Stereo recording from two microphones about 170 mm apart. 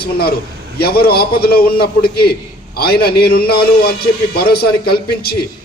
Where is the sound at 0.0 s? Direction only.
65° left (ahead or behind).